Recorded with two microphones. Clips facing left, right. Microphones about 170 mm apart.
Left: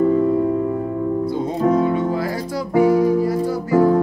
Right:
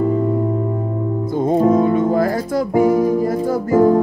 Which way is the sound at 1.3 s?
50° right (ahead or behind).